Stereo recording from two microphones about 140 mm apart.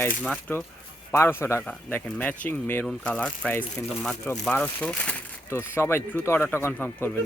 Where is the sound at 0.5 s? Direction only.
15° left (ahead or behind).